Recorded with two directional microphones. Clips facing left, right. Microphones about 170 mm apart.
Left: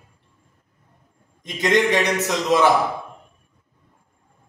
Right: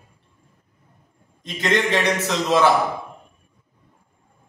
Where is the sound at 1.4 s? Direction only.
15° left (ahead or behind).